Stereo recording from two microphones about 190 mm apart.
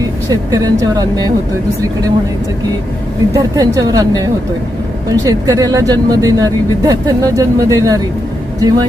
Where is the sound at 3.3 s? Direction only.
15° right (ahead or behind).